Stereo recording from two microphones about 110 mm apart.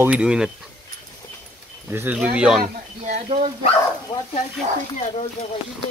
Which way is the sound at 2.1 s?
10° right (ahead or behind).